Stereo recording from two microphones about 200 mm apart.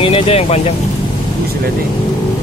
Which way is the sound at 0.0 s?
30° left (ahead or behind).